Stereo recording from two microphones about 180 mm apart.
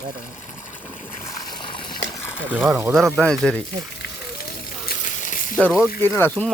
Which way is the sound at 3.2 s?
5° left (ahead or behind).